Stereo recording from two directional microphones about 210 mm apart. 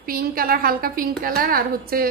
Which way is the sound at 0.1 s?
45° right (ahead or behind).